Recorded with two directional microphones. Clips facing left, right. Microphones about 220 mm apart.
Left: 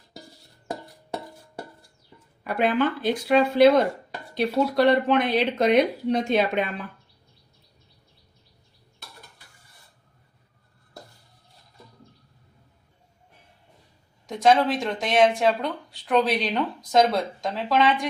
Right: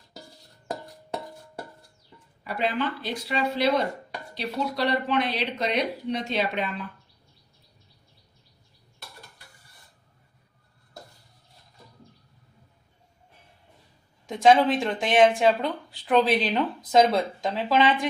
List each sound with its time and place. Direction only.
2.4 s speech: 50° left (ahead or behind)
14.4 s speech: centre (ahead or behind)